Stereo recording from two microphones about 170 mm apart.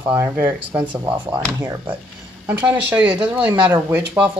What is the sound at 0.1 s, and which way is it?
Speech, 15° right (ahead or behind).